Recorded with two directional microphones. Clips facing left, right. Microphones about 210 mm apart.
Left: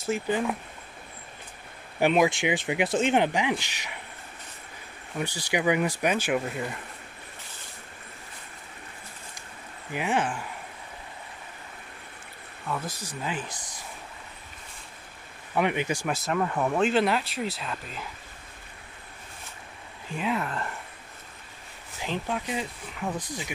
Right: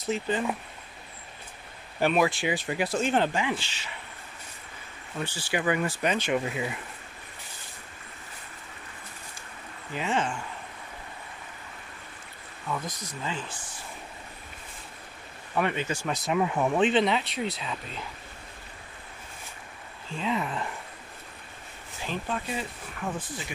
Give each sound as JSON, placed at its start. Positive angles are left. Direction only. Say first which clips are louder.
{"t": 0.1, "sound": "speech", "louder": "left 1 dB", "side_deg": 5}
{"t": 2.0, "sound": "speech", "louder": "left 2 dB", "side_deg": 15}
{"t": 5.1, "sound": "speech", "louder": "left 2 dB", "side_deg": 15}
{"t": 6.4, "sound": "speech", "louder": "right 1 dB", "side_deg": -5}
{"t": 9.9, "sound": "speech", "louder": "left 1 dB", "side_deg": 10}
{"t": 12.8, "sound": "speech", "louder": "left 1 dB", "side_deg": 30}
{"t": 15.5, "sound": "speech", "louder": "left 2 dB", "side_deg": 15}
{"t": 16.2, "sound": "speech", "louder": "right 5 dB", "side_deg": -5}
{"t": 20.1, "sound": "speech", "louder": "left 1 dB", "side_deg": 10}
{"t": 20.3, "sound": "speech", "louder": "even", "side_deg": -5}
{"t": 22.0, "sound": "speech", "louder": "left 2 dB", "side_deg": 15}